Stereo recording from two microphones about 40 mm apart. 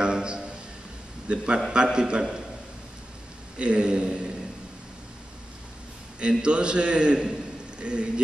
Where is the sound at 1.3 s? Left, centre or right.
Right.